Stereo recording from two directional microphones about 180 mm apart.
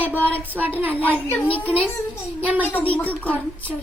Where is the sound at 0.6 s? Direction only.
10° right (ahead or behind).